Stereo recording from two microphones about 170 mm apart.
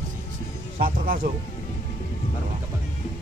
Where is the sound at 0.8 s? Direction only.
55° right (ahead or behind).